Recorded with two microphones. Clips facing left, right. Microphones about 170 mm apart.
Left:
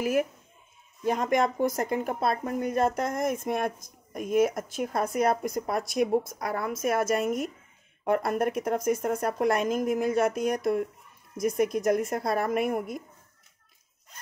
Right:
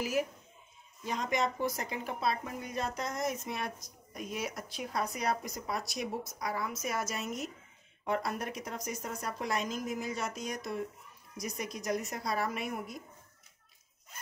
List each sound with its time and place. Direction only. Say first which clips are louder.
0.0 s speech: left 6 dB; 55° left (ahead or behind)